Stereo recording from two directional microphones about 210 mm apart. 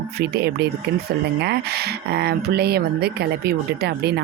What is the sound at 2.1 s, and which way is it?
Speech, 50° right (ahead or behind).